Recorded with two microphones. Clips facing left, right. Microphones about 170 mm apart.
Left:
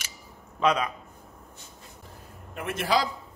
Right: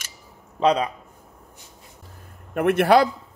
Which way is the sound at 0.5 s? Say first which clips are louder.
Right 5 dB; 30° right (ahead or behind).